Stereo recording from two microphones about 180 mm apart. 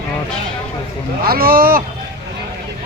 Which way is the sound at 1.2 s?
55° right (ahead or behind).